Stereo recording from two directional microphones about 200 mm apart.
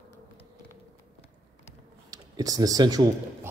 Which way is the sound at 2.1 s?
20° right (ahead or behind).